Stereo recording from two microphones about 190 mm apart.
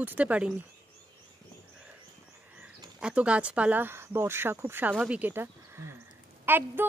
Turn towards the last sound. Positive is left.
turn(degrees=-10)  # may be behind; listen again after turning